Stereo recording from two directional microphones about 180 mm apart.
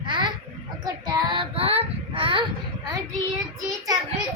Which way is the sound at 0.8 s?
20° right (ahead or behind).